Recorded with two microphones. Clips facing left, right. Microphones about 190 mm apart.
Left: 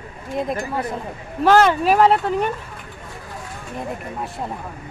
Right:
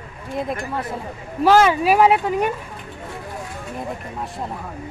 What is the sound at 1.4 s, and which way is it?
Speech, 10° right (ahead or behind).